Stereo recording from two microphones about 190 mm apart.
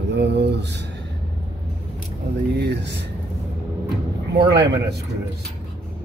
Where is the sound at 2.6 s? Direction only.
65° right (ahead or behind).